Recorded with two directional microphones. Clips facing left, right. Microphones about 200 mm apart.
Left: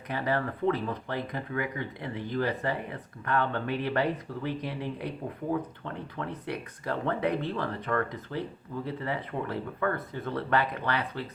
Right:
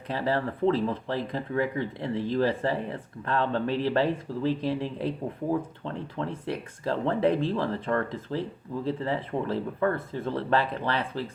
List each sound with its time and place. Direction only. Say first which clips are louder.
0.1 s speech: right 2 dB; 30° right (ahead or behind)